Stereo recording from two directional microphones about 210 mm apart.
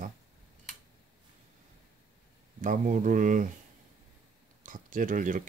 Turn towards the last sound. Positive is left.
turn(degrees=-40)  # may be behind; listen again after turning